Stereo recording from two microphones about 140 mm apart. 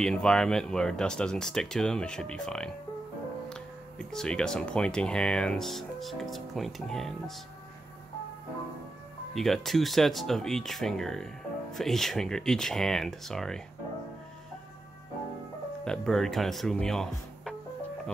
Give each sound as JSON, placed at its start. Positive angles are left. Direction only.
{"t": 0.0, "sound": "speech", "side_deg": 5}
{"t": 9.3, "sound": "speech", "side_deg": 0}
{"t": 15.8, "sound": "speech", "side_deg": 5}